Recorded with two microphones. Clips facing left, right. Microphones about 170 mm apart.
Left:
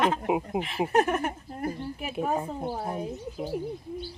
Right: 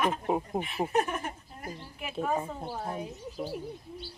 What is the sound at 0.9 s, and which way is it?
Speech, 70° left (ahead or behind).